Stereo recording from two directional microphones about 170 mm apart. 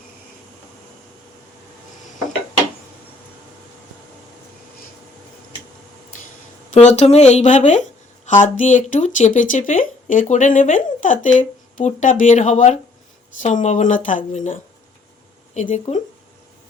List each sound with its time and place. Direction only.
6.7 s speech: 40° left (ahead or behind)